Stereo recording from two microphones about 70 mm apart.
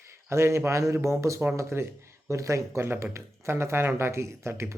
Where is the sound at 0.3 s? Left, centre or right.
Right.